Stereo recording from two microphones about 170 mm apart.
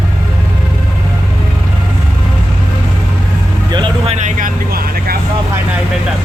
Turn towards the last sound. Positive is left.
turn(degrees=-60)  # may be behind; listen again after turning